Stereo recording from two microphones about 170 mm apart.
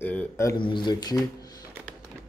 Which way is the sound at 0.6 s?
30° left (ahead or behind).